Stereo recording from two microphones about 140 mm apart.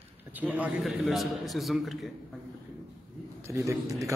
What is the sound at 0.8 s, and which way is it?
A man's voice, centre (ahead or behind).